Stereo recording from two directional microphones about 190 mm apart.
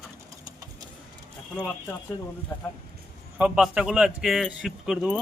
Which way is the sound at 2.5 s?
20° left (ahead or behind).